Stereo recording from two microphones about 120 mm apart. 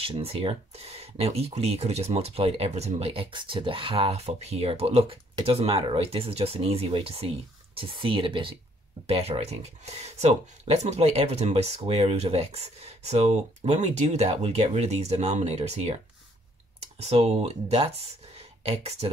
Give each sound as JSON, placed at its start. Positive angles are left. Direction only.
{"t": 0.0, "sound": "speech", "side_deg": -50}
{"t": 17.0, "sound": "speech", "side_deg": -60}